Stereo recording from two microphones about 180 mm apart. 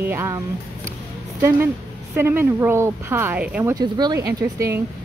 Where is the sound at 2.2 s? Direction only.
10° right (ahead or behind).